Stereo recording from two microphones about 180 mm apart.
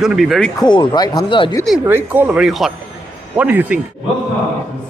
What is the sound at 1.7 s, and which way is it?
Speech, 10° right (ahead or behind).